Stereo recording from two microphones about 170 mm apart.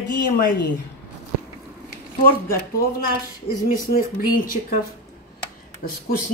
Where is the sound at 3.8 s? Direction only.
55° left (ahead or behind).